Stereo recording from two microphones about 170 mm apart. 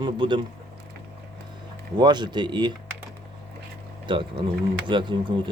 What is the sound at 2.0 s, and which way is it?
Speech, 25° right (ahead or behind).